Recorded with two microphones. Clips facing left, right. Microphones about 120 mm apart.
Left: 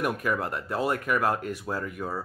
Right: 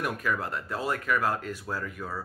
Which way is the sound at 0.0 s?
15° left (ahead or behind).